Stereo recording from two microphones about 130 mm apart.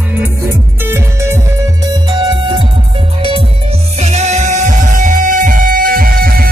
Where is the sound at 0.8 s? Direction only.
20° right (ahead or behind).